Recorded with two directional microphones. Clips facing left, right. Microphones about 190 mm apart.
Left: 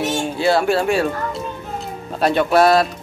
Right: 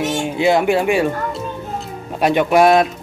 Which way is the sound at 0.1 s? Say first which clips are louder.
Right 2 dB; 15° right (ahead or behind).